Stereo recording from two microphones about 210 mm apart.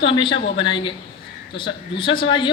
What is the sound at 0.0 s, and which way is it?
A woman's voice, 25° left (ahead or behind).